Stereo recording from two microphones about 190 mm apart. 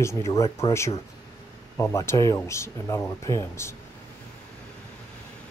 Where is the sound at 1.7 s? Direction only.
15° left (ahead or behind).